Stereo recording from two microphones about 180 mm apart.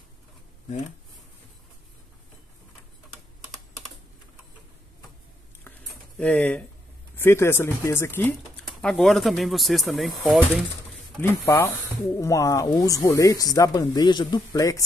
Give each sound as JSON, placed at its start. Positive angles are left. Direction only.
{"t": 6.1, "sound": "speech", "side_deg": 5}
{"t": 11.1, "sound": "speech", "side_deg": 15}